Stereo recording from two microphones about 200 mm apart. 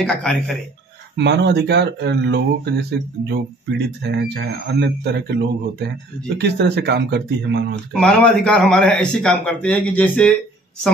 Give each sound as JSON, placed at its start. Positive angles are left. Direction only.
{"t": 0.0, "sound": "a man's voice", "side_deg": 5}
{"t": 1.1, "sound": "speech", "side_deg": -60}
{"t": 7.9, "sound": "a man's voice", "side_deg": 5}